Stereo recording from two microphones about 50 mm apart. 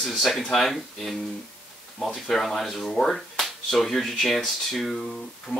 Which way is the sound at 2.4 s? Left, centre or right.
Centre.